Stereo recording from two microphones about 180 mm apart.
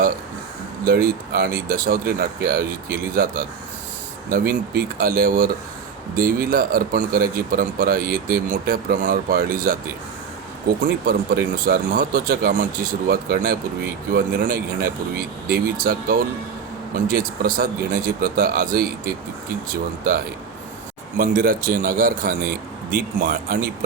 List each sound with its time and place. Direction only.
0.9 s speech: 55° right (ahead or behind)
11.0 s speech: 55° right (ahead or behind)
21.2 s speech: 50° right (ahead or behind)